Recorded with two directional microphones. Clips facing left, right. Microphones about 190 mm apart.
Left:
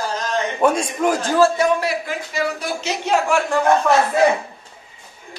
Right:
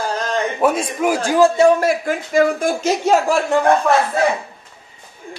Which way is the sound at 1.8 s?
50° right (ahead or behind).